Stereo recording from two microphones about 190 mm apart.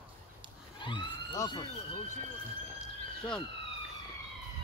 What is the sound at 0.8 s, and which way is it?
Speech, 25° left (ahead or behind).